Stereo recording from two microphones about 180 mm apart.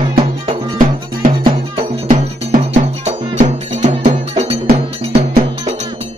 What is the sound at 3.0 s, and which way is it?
Music, 40° right (ahead or behind).